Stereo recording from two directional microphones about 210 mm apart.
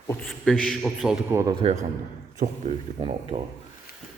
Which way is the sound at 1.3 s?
15° right (ahead or behind).